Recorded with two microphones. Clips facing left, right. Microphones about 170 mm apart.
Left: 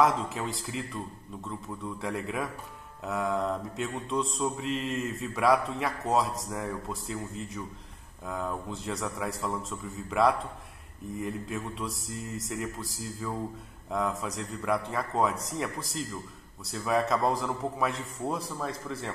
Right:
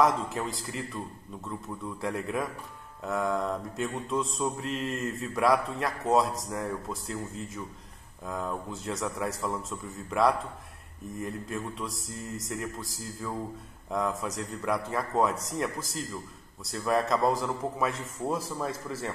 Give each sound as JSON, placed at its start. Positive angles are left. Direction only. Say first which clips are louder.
{"t": 0.0, "sound": "mantra", "louder": "even", "side_deg": 0}